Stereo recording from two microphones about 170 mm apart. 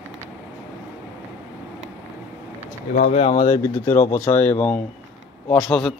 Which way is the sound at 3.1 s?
35° left (ahead or behind).